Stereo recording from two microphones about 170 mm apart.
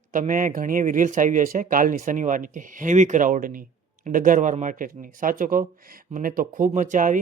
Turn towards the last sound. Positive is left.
turn(degrees=-50)  # may be behind; listen again after turning